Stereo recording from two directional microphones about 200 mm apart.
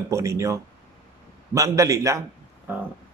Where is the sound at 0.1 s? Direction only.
15° right (ahead or behind).